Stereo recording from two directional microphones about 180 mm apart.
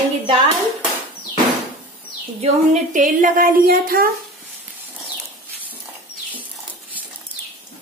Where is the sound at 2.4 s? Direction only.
45° right (ahead or behind).